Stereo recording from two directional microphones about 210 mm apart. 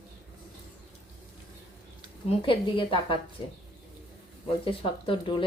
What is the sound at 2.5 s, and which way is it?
Speech, 25° left (ahead or behind).